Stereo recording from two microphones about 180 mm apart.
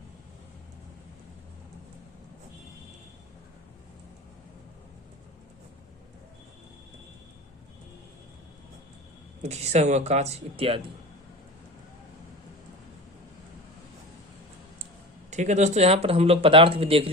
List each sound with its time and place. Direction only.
9.4 s speech: 35° right (ahead or behind)
15.3 s speech: 40° right (ahead or behind)